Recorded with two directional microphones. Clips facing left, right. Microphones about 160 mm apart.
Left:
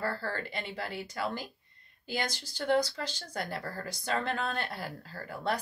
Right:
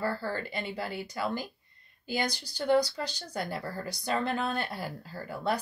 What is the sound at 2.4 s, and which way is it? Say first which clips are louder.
Speech: right 2 dB; 35° right (ahead or behind).